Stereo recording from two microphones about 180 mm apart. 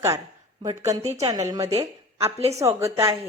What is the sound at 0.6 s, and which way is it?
A woman's voice, 15° right (ahead or behind).